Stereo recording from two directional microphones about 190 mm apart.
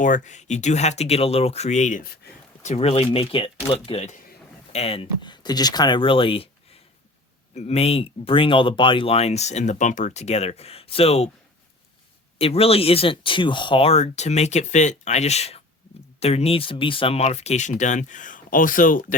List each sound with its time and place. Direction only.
0.0 s speech: 40° left (ahead or behind)
7.5 s speech: 35° left (ahead or behind)
12.4 s speech: 30° left (ahead or behind)